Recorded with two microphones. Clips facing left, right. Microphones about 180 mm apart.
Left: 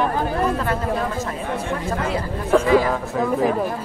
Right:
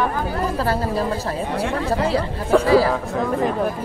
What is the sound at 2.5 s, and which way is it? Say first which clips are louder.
Speech: right 1 dB; centre (ahead or behind).